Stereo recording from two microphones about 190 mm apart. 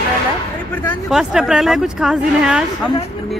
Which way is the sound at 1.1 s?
5° right (ahead or behind).